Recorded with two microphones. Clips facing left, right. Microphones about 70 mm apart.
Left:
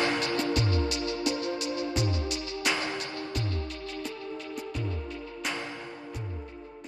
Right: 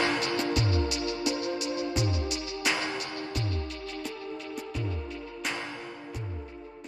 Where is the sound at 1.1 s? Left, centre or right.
Centre.